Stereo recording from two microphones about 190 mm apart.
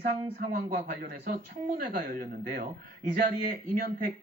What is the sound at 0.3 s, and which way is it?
Speech, 50° right (ahead or behind).